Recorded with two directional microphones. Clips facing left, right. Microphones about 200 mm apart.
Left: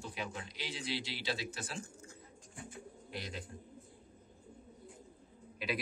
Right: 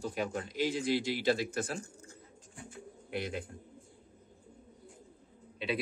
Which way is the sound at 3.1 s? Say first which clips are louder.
Right 8 dB; 55° right (ahead or behind).